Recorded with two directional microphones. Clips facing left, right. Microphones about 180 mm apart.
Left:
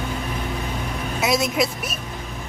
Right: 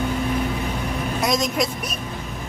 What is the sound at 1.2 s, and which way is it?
Speech, 5° left (ahead or behind).